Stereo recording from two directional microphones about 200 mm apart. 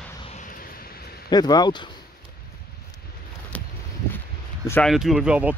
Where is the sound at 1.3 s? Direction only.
20° left (ahead or behind).